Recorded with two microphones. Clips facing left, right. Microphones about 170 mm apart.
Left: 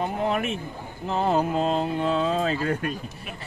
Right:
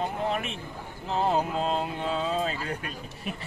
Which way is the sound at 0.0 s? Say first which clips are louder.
Left 4 dB; 50° left (ahead or behind).